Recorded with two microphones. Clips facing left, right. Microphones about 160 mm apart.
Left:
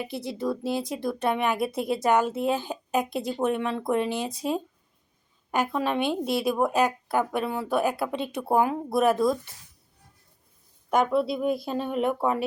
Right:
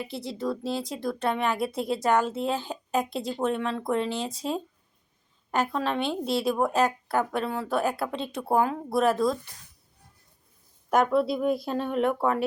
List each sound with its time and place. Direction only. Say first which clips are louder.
0.1 s speech: left 1 dB; 20° left (ahead or behind)
10.8 s speech: right 1 dB; centre (ahead or behind)